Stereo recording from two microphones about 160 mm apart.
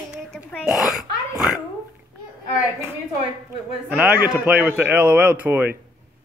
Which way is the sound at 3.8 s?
10° right (ahead or behind).